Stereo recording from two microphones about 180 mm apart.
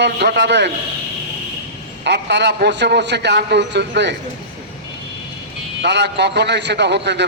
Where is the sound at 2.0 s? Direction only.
70° right (ahead or behind).